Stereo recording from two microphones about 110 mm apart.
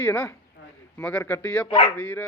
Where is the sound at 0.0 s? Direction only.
20° left (ahead or behind).